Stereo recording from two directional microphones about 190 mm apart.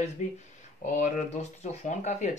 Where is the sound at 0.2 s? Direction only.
40° left (ahead or behind).